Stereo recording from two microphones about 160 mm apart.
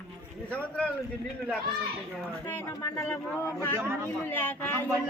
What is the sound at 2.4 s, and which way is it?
A man's voice, 15° left (ahead or behind).